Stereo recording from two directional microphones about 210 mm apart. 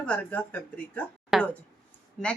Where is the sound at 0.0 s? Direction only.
5° left (ahead or behind).